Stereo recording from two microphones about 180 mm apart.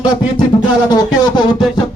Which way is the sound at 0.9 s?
20° left (ahead or behind).